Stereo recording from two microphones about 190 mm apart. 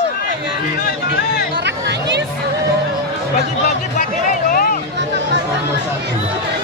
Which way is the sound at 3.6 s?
45° left (ahead or behind).